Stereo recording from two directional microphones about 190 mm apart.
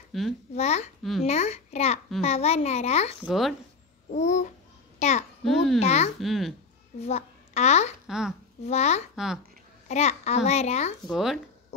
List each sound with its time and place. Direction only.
0.1 s a child's voice: centre (ahead or behind)
0.6 s a child's voice: 35° left (ahead or behind)
3.3 s a child's voice: centre (ahead or behind)
4.1 s a child's voice: 35° left (ahead or behind)
4.9 s child singing: 35° left (ahead or behind)
5.4 s a child's voice: centre (ahead or behind)
5.8 s a child's voice: 35° left (ahead or behind)
6.2 s a child's voice: centre (ahead or behind)
7.0 s a child's voice: 35° left (ahead or behind)
8.1 s a child's voice: 5° right (ahead or behind)
8.6 s a child's voice: 35° left (ahead or behind)
9.1 s a child's voice: centre (ahead or behind)
9.8 s a child's voice: 35° left (ahead or behind)
11.1 s a child's voice: centre (ahead or behind)